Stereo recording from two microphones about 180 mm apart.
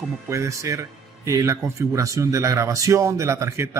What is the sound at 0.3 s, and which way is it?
A man's voice, 15° right (ahead or behind).